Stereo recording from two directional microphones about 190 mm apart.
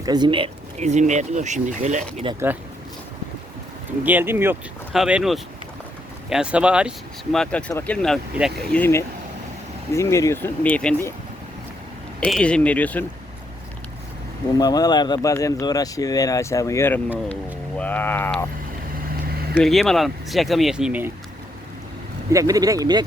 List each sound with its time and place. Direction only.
0.0 s speech: 20° right (ahead or behind); by 2.2 s 40° right (ahead or behind)
4.0 s speech: 10° right (ahead or behind); by 7.9 s 15° left (ahead or behind)
7.9 s speech: centre (ahead or behind)
8.8 s speech: 15° left (ahead or behind)
12.2 s speech: 5° left (ahead or behind)
14.6 s speech: 20° left (ahead or behind)
19.5 s speech: centre (ahead or behind)
22.3 s speech: 15° right (ahead or behind)